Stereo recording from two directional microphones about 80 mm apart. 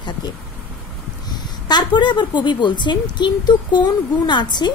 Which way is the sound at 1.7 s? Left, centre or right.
Left.